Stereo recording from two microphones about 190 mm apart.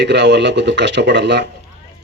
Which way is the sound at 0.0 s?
65° right (ahead or behind).